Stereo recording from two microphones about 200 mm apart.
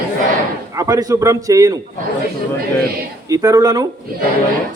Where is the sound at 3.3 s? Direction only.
15° right (ahead or behind).